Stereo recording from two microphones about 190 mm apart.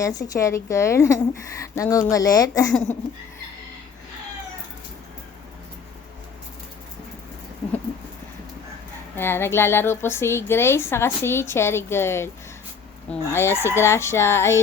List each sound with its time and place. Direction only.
0.0 s a woman's voice: 20° left (ahead or behind)
9.1 s a woman's voice: 10° left (ahead or behind)